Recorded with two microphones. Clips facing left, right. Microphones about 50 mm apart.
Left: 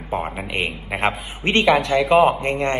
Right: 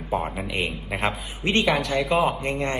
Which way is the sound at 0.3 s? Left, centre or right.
Left.